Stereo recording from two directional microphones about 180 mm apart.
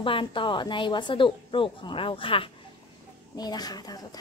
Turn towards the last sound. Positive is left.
turn(degrees=20)  # may be behind; listen again after turning